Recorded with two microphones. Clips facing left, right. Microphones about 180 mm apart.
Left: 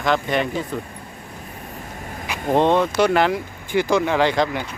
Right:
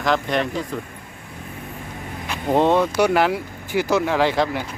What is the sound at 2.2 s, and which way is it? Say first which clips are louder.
Vehicle: even; 5° left (ahead or behind).